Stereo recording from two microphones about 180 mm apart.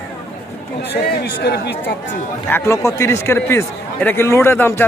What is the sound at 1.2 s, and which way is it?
Speech, 65° left (ahead or behind).